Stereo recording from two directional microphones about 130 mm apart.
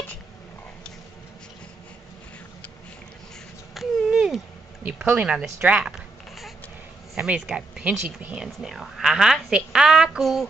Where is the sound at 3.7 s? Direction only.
5° right (ahead or behind).